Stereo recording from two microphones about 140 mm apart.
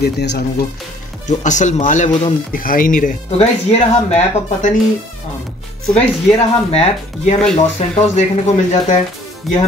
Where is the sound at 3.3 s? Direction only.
50° left (ahead or behind).